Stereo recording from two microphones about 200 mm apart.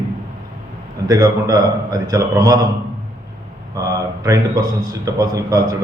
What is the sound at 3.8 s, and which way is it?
A man's voice, 15° right (ahead or behind).